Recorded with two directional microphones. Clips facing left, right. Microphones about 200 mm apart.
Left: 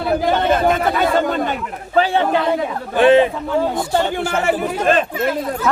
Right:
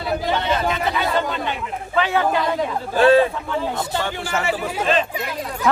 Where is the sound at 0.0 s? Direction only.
55° left (ahead or behind).